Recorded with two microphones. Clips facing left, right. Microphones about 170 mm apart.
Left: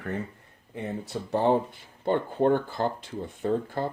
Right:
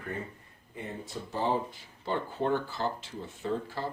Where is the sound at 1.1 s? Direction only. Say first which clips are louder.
Left 7 dB; 60° left (ahead or behind).